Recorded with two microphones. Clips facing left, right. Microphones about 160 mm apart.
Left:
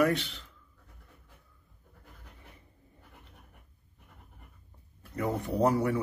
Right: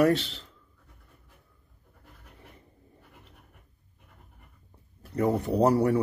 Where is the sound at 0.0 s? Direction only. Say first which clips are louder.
Right 4 dB; 30° right (ahead or behind).